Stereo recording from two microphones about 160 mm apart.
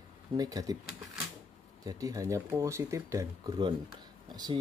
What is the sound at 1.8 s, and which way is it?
Speech, 20° right (ahead or behind).